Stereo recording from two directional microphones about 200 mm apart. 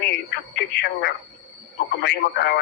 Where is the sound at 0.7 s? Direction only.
55° left (ahead or behind).